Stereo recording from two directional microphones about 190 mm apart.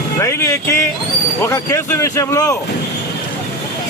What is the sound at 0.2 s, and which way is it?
Speech, 15° left (ahead or behind).